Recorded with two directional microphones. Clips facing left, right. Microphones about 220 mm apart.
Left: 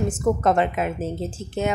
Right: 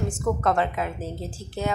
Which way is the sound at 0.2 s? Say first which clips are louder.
Left 3 dB; 20° left (ahead or behind).